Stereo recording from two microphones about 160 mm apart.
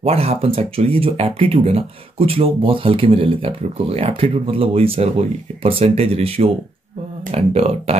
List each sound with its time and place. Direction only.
0.0 s speech: 40° right (ahead or behind)